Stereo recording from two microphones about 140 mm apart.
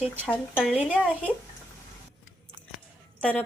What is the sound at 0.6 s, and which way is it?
Speech, 5° right (ahead or behind).